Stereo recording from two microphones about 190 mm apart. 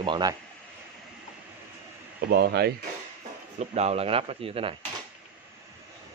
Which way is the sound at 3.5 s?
35° right (ahead or behind).